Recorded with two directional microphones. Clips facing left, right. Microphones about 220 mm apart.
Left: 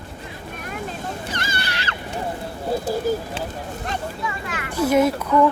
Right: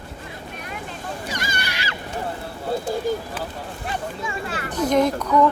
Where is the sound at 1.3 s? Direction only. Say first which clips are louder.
Left 1 dB; 10° right (ahead or behind).